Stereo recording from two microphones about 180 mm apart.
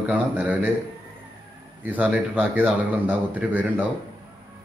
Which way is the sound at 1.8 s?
10° right (ahead or behind).